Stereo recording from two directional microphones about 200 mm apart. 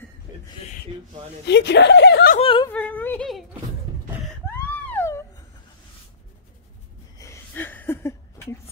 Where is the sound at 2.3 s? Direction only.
25° left (ahead or behind).